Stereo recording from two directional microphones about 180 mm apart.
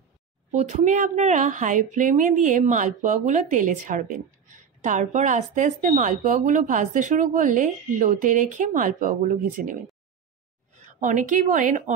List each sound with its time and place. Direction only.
0.5 s a woman's voice: 40° right (ahead or behind)
11.0 s a woman's voice: 45° right (ahead or behind)